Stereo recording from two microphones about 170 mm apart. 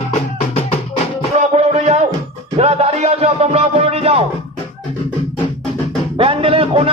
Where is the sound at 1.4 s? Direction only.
45° right (ahead or behind).